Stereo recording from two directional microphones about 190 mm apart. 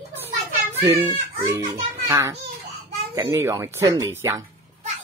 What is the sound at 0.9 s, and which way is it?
Speech, 30° right (ahead or behind).